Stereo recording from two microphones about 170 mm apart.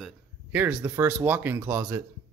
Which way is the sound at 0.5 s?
10° right (ahead or behind).